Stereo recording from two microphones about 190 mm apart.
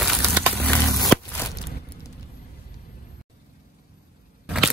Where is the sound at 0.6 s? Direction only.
10° left (ahead or behind).